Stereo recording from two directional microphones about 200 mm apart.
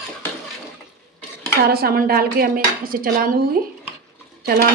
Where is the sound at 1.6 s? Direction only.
50° right (ahead or behind).